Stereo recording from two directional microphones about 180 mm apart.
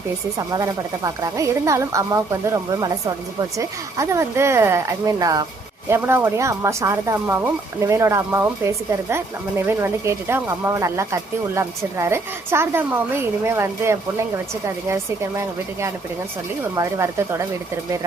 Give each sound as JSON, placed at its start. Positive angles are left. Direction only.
{"t": 0.3, "sound": "speech", "side_deg": -20}